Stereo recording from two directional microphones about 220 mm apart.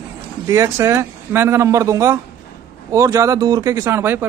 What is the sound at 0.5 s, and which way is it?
Speech, 15° right (ahead or behind).